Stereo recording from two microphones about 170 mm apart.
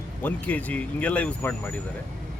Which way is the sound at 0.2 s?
10° left (ahead or behind).